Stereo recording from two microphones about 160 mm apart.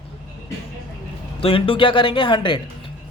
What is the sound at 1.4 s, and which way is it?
A man's voice, 35° left (ahead or behind).